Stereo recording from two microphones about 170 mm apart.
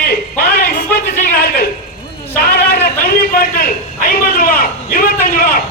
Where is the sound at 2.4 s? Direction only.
70° left (ahead or behind).